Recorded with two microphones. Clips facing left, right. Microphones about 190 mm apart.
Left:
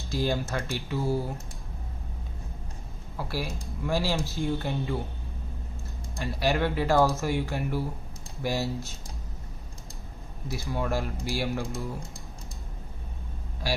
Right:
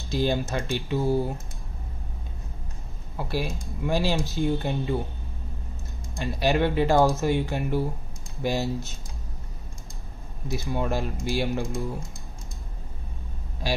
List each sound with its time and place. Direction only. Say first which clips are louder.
0.1 s speech: right 3 dB; 20° right (ahead or behind)
3.2 s speech: right 4 dB; 20° right (ahead or behind)
6.1 s speech: right 3 dB; 20° right (ahead or behind)
10.5 s speech: right 2 dB; 20° right (ahead or behind)